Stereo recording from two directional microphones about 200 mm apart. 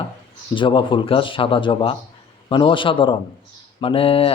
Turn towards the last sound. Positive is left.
turn(degrees=30)  # may be behind; listen again after turning